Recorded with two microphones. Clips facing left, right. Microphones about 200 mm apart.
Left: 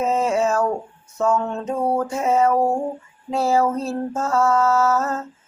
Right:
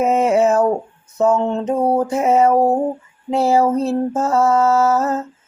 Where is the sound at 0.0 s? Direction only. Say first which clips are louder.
Right 5 dB; 20° right (ahead or behind).